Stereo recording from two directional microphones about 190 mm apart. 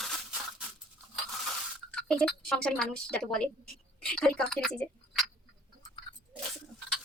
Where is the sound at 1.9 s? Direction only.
5° left (ahead or behind).